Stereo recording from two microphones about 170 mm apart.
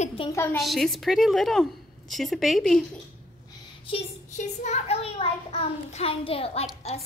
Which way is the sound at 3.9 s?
40° left (ahead or behind).